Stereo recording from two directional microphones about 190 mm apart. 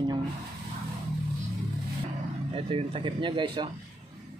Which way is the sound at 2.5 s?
30° right (ahead or behind).